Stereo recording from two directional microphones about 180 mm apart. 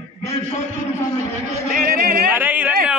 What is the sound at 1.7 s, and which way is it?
Music, 55° right (ahead or behind).